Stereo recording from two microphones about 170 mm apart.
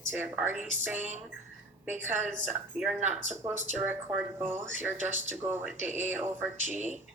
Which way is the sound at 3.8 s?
15° right (ahead or behind).